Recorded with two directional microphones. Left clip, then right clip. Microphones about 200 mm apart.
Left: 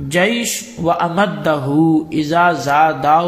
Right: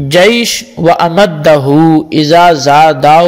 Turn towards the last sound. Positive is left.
turn(degrees=-45)  # may be behind; listen again after turning